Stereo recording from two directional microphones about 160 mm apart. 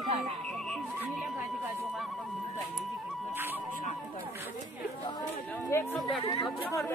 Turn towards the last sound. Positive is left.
turn(degrees=25)  # may be behind; listen again after turning